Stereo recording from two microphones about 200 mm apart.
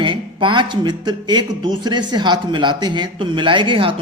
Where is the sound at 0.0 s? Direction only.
25° right (ahead or behind).